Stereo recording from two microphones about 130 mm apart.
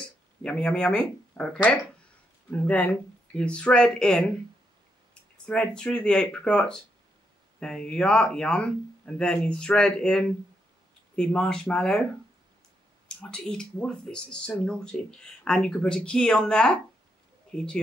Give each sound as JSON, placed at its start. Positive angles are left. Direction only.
{"t": 0.0, "sound": "speech", "side_deg": 5}
{"t": 5.4, "sound": "speech", "side_deg": 5}
{"t": 13.2, "sound": "speech", "side_deg": 5}